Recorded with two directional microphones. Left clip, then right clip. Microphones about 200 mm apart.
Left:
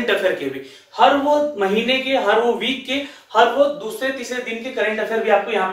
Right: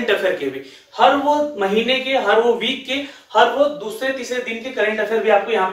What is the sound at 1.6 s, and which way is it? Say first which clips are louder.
Speech: right 1 dB; 5° left (ahead or behind).